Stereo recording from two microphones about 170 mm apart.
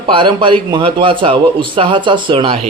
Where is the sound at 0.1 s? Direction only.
30° right (ahead or behind).